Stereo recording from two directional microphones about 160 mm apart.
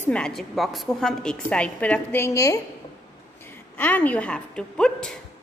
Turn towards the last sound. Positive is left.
turn(degrees=5)  # may be behind; listen again after turning